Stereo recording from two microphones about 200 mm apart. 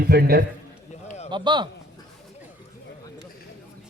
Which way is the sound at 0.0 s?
50° right (ahead or behind).